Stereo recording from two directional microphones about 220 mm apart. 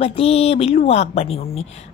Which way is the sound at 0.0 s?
25° left (ahead or behind).